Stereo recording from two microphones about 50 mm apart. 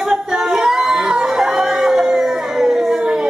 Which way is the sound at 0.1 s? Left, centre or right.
Centre.